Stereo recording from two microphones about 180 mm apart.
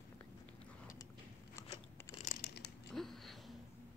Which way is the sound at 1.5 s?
15° left (ahead or behind).